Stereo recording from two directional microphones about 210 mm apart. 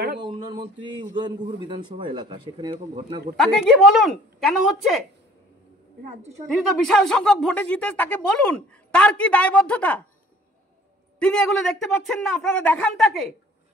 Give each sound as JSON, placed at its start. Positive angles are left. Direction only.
{"t": 0.9, "sound": "speech", "side_deg": -20}
{"t": 3.3, "sound": "speech", "side_deg": 5}
{"t": 6.5, "sound": "speech", "side_deg": 5}
{"t": 11.1, "sound": "speech", "side_deg": 5}